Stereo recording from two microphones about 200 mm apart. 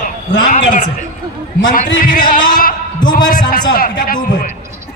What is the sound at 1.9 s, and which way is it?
A man's voice, 45° left (ahead or behind).